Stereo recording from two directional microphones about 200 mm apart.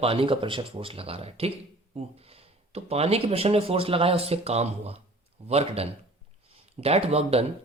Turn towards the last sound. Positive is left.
turn(degrees=-30)  # may be behind; listen again after turning